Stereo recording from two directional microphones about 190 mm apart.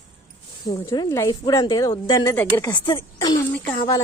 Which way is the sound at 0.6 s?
20° left (ahead or behind).